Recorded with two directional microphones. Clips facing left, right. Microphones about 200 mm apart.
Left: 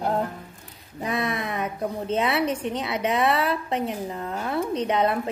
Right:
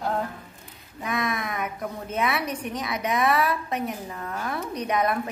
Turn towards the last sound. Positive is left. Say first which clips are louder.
# left 2 dB
turn(degrees=25)  # may be behind; listen again after turning